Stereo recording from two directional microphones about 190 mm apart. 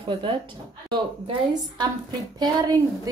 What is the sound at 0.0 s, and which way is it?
Speech, 25° right (ahead or behind).